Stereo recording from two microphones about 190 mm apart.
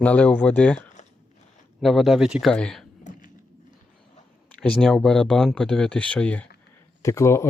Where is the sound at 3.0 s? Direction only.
45° left (ahead or behind).